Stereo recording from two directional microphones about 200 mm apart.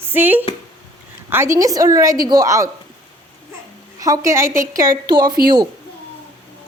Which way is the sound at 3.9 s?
15° right (ahead or behind).